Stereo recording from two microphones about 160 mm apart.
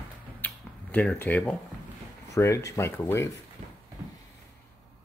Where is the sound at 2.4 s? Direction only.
20° left (ahead or behind).